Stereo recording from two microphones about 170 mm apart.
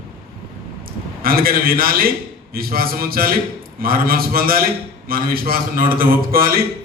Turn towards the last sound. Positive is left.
turn(degrees=-60)  # may be behind; listen again after turning